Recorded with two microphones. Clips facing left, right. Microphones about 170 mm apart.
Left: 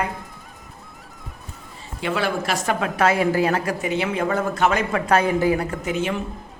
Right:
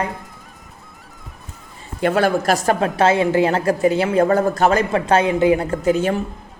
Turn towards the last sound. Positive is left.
turn(degrees=-40)  # may be behind; listen again after turning